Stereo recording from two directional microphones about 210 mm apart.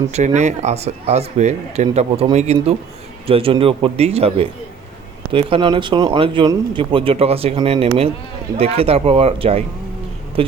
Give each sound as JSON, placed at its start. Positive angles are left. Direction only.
{"t": 0.1, "sound": "speech", "side_deg": -35}